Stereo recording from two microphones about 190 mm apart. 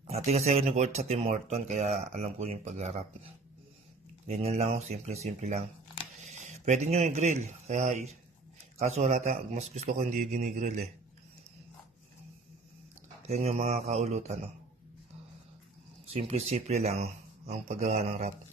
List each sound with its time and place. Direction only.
0.0 s speech: 35° right (ahead or behind)
4.3 s a man's voice: 35° right (ahead or behind)
13.3 s speech: 35° right (ahead or behind)
16.1 s speech: 30° right (ahead or behind)